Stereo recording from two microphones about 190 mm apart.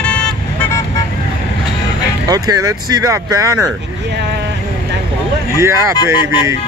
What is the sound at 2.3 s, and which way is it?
Speech, 20° right (ahead or behind).